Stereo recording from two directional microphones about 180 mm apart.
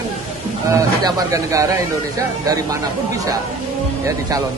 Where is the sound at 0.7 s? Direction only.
20° right (ahead or behind).